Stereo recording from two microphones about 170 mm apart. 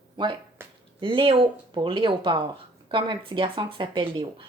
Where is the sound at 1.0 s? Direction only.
30° right (ahead or behind).